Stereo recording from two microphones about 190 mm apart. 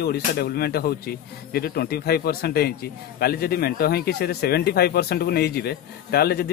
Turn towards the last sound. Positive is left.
turn(degrees=55)  # may be behind; listen again after turning